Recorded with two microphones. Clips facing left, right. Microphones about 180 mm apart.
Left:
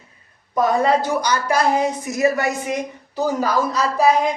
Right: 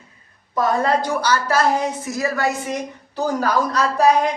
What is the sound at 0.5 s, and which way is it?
A woman's voice, 10° left (ahead or behind).